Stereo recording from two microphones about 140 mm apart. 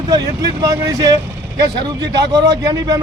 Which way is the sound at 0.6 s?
25° right (ahead or behind).